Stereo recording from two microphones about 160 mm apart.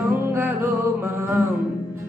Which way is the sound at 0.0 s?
15° right (ahead or behind).